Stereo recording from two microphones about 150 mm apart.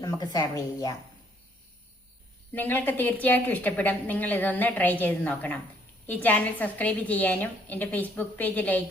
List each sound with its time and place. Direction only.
0.0 s a woman's voice: 25° left (ahead or behind)
2.5 s a woman's voice: 10° left (ahead or behind)